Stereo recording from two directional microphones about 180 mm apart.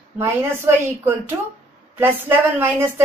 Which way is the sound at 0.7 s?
15° right (ahead or behind).